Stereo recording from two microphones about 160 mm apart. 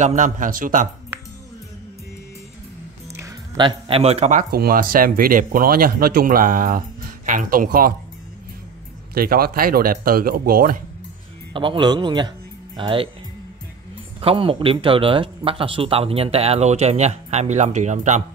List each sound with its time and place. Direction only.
0.0 s a man's voice: 50° right (ahead or behind)
3.2 s music: 20° right (ahead or behind)
3.6 s speech: 35° right (ahead or behind); by 7.9 s 60° right (ahead or behind)
9.1 s speech: 70° right (ahead or behind)
11.5 s speech: 30° right (ahead or behind)
14.2 s speech: 35° right (ahead or behind)